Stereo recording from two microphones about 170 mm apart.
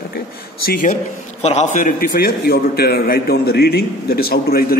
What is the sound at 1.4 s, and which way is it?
A man's voice, 40° left (ahead or behind).